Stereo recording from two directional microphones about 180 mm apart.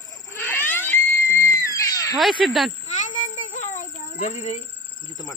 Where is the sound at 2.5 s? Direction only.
Centre (ahead or behind).